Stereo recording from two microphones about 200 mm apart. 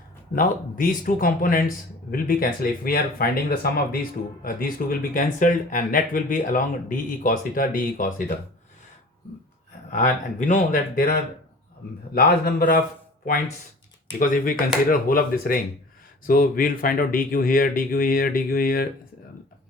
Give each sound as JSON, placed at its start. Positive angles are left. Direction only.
{"t": 0.3, "sound": "speech", "side_deg": 45}
{"t": 9.9, "sound": "speech", "side_deg": 40}
{"t": 14.2, "sound": "speech", "side_deg": 45}